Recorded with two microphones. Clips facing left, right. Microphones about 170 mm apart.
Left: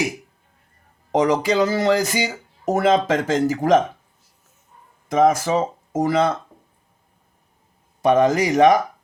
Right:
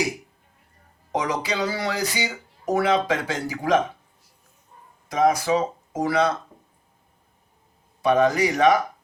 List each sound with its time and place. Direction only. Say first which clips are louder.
1.2 s speech: left 9 dB; 45° left (ahead or behind)
5.0 s speech: left 3 dB; 50° left (ahead or behind)
8.0 s speech: left 3 dB; 45° left (ahead or behind)